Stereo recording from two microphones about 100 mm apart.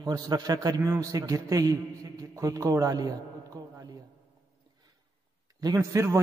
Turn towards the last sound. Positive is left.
turn(degrees=-30)  # may be behind; listen again after turning